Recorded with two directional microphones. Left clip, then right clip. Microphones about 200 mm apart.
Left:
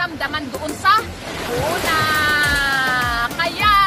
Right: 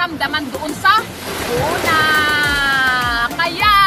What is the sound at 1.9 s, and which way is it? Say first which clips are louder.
Music: right 4 dB; 15° left (ahead or behind).